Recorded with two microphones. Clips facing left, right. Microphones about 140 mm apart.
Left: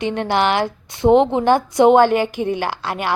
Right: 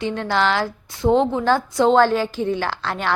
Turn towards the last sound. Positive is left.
turn(degrees=10)  # may be behind; listen again after turning